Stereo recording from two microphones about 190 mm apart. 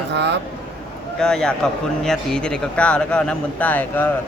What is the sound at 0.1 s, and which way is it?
Speech, 65° right (ahead or behind).